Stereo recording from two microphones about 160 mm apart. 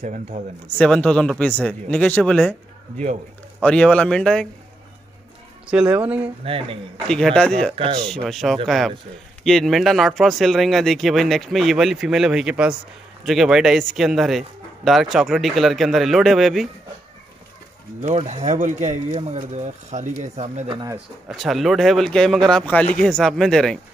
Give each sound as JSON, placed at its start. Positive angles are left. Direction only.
{"t": 0.0, "sound": "speech", "side_deg": -50}
{"t": 0.7, "sound": "speech", "side_deg": 5}
{"t": 3.6, "sound": "speech", "side_deg": 5}
{"t": 5.7, "sound": "speech", "side_deg": -5}
{"t": 6.4, "sound": "speech", "side_deg": -35}
{"t": 7.1, "sound": "speech", "side_deg": 5}
{"t": 7.7, "sound": "speech", "side_deg": -35}
{"t": 8.3, "sound": "speech", "side_deg": 0}
{"t": 18.0, "sound": "speech", "side_deg": -45}
{"t": 20.6, "sound": "speech", "side_deg": -25}
{"t": 20.9, "sound": "speech", "side_deg": 0}